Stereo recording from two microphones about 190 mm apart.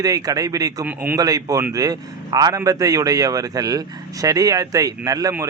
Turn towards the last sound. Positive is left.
turn(degrees=-20)  # may be behind; listen again after turning